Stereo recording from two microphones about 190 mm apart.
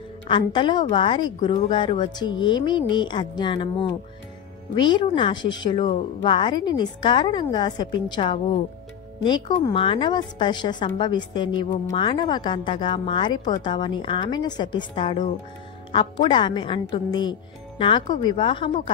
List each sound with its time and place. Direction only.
0.3 s speech: 25° left (ahead or behind)